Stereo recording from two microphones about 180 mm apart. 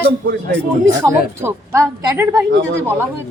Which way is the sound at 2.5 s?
90° right.